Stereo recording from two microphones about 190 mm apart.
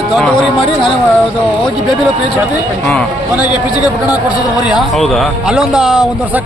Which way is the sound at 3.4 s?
20° left (ahead or behind).